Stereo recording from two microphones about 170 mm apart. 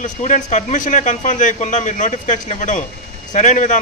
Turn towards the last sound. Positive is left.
turn(degrees=45)  # may be behind; listen again after turning